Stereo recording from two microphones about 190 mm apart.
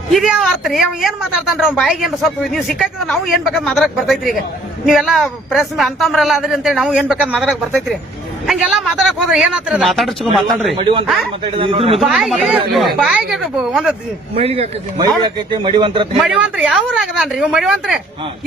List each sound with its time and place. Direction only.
0.1 s a woman's voice: 5° right (ahead or behind)
10.8 s a man's voice: 25° right (ahead or behind)
11.9 s a woman's voice: centre (ahead or behind)
14.3 s a man's voice: 30° right (ahead or behind)
16.2 s a woman's voice: 5° right (ahead or behind)